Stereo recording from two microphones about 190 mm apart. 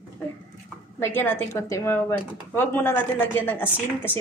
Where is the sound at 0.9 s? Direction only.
10° left (ahead or behind).